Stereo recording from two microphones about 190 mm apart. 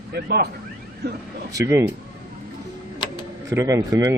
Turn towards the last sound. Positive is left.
turn(degrees=-15)  # may be behind; listen again after turning